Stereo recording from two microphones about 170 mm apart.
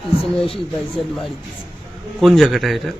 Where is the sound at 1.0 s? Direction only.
Centre (ahead or behind).